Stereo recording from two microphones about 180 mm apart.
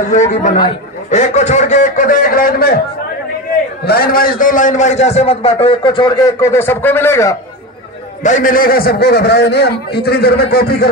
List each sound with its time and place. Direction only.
0.1 s a man's voice: 40° left (ahead or behind)
3.8 s a man's voice: 60° left (ahead or behind); by 7.3 s 15° left (ahead or behind)
8.2 s a man's voice: 45° left (ahead or behind); by 10.9 s 60° left (ahead or behind)